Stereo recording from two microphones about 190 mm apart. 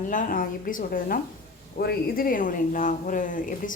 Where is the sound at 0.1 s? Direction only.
45° left (ahead or behind).